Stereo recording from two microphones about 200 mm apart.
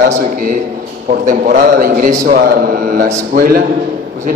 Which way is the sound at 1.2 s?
45° right (ahead or behind).